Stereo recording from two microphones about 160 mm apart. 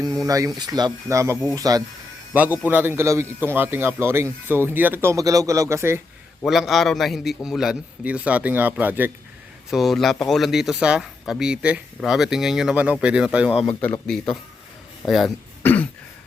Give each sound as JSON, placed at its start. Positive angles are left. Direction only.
{"t": 0.0, "sound": "speech", "side_deg": -25}
{"t": 2.3, "sound": "a man's voice", "side_deg": -10}
{"t": 6.4, "sound": "a man's voice", "side_deg": 0}
{"t": 9.6, "sound": "a man's voice", "side_deg": 0}
{"t": 13.7, "sound": "a man's voice", "side_deg": 10}
{"t": 15.6, "sound": "throat clearing", "side_deg": 10}